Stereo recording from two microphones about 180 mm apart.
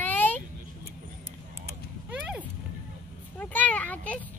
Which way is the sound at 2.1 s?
10° right (ahead or behind).